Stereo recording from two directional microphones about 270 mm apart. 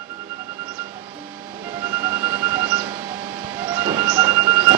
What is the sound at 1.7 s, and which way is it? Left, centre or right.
Train, centre.